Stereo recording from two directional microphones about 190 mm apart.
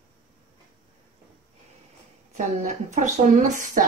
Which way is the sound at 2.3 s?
40° right (ahead or behind).